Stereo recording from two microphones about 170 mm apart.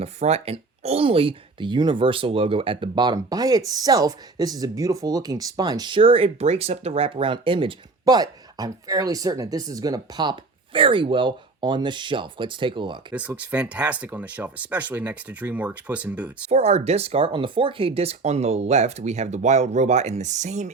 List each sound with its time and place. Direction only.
0.0 s speech: 40° right (ahead or behind)
13.1 s speech: 10° right (ahead or behind)
16.5 s speech: 40° right (ahead or behind)